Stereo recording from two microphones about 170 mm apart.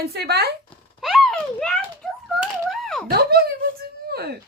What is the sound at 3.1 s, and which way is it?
Speech, 65° right (ahead or behind).